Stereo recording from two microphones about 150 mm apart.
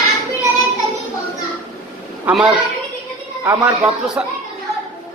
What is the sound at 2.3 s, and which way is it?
Speech, 10° right (ahead or behind).